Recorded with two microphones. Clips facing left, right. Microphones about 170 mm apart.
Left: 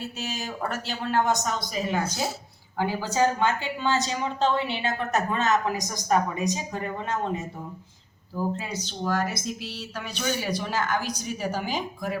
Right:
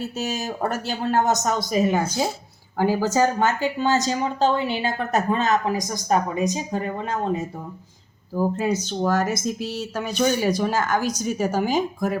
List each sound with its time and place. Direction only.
0.0 s a woman's voice: 45° right (ahead or behind)
8.4 s speech: 45° right (ahead or behind)